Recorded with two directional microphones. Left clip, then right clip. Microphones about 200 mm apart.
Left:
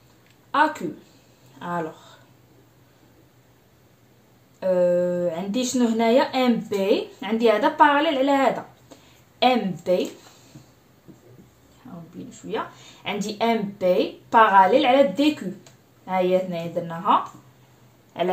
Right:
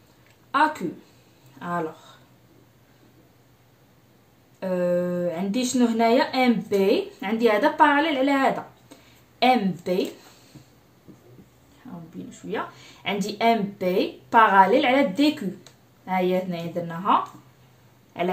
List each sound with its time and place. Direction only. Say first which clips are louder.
0.5 s a woman's voice: left 1 dB; 5° left (ahead or behind)
4.6 s speech: left 4 dB; centre (ahead or behind)
12.3 s speech: left 1 dB; centre (ahead or behind)